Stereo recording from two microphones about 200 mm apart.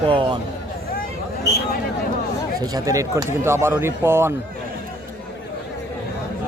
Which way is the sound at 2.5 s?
20° right (ahead or behind).